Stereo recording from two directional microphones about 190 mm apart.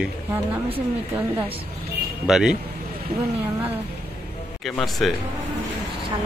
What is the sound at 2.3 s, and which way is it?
Speech, centre (ahead or behind).